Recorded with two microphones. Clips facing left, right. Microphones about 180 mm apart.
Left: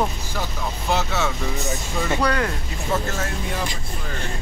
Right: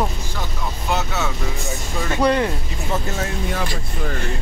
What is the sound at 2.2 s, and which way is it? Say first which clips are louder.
Speech: right 6 dB; 25° right (ahead or behind).